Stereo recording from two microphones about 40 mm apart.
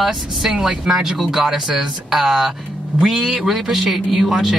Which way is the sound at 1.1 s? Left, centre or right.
Centre.